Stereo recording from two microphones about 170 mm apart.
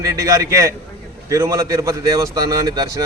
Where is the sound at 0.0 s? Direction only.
20° right (ahead or behind).